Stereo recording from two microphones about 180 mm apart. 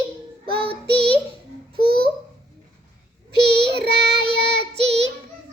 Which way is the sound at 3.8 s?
65° right (ahead or behind).